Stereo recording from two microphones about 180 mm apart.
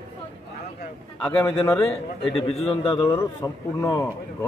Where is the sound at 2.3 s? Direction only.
35° left (ahead or behind).